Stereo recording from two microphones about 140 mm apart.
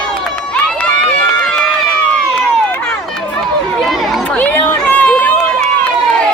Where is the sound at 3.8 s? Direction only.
Centre (ahead or behind).